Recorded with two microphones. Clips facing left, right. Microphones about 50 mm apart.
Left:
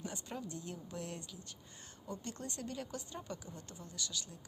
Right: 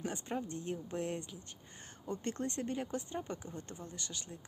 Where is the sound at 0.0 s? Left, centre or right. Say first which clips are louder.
Right 5 dB; right.